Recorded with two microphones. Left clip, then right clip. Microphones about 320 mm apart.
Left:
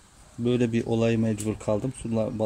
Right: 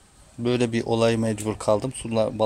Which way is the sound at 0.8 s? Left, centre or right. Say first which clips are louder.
Right 4 dB; right.